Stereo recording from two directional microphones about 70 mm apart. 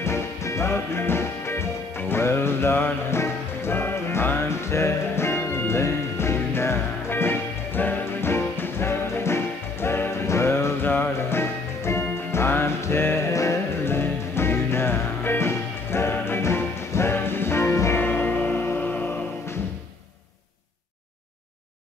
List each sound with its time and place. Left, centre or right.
0.0 s music: left
13.3 s music: left
13.8 s music: left
18.0 s music: left